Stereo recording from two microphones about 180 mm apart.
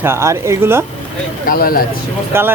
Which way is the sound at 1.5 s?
55° left (ahead or behind).